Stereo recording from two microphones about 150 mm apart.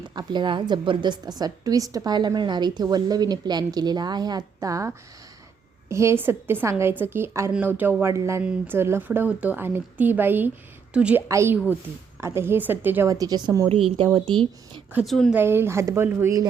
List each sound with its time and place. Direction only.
0.1 s a woman's voice: 30° right (ahead or behind)
15.0 s speech: centre (ahead or behind)
15.4 s a woman's voice: 15° right (ahead or behind)